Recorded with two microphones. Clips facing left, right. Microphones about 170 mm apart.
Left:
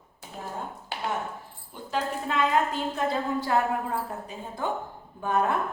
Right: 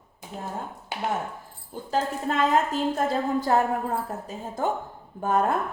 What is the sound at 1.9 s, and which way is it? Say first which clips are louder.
A woman's voice: right 3 dB; 40° right (ahead or behind).